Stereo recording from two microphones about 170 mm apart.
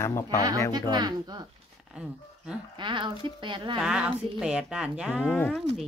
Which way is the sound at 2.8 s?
30° right (ahead or behind).